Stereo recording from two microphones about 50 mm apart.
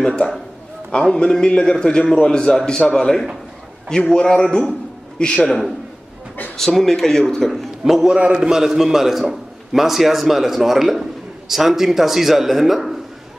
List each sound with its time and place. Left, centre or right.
1.1 s a man's voice: centre
8.1 s a man's voice: centre